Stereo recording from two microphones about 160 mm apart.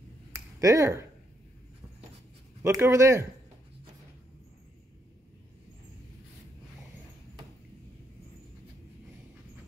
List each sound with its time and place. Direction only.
0.6 s speech: 20° right (ahead or behind)
2.6 s speech: 20° right (ahead or behind)